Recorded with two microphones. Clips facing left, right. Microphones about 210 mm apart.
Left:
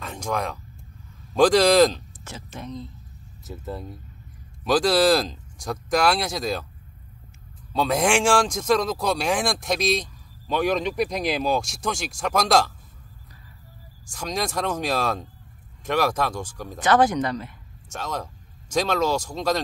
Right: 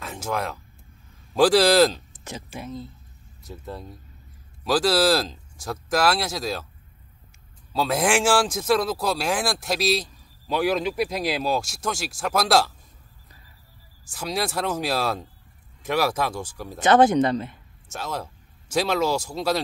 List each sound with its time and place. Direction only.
0.0 s a sound: 5° right (ahead or behind)
1.3 s speech: 5° right (ahead or behind)
2.1 s speech: 15° right (ahead or behind)
2.6 s speech: 5° right (ahead or behind)
7.7 s speech: 5° right (ahead or behind)
14.1 s speech: 5° right (ahead or behind)
16.8 s speech: 25° right (ahead or behind)
17.9 s speech: 5° right (ahead or behind)